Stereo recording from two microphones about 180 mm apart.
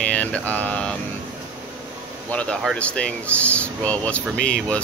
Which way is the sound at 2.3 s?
5° left (ahead or behind).